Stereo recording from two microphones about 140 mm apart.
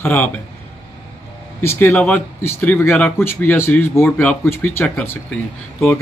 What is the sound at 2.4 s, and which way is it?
Speech, 15° left (ahead or behind).